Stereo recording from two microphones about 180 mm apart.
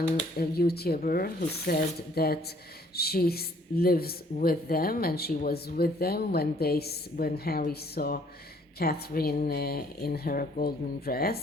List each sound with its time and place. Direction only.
0.3 s a woman's voice: 60° left (ahead or behind)